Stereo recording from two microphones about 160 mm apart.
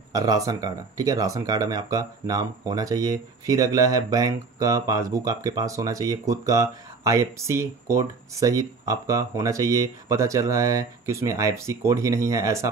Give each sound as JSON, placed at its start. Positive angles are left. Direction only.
{"t": 0.1, "sound": "speech", "side_deg": -20}